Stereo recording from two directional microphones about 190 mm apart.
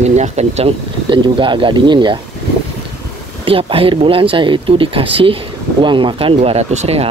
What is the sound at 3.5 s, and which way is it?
Speech, 30° right (ahead or behind).